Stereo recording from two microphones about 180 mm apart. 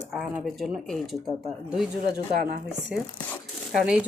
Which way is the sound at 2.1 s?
60° right (ahead or behind).